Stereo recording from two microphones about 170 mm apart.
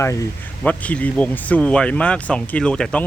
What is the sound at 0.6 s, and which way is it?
Speech, 10° left (ahead or behind).